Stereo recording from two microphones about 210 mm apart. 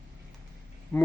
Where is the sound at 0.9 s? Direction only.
5° left (ahead or behind).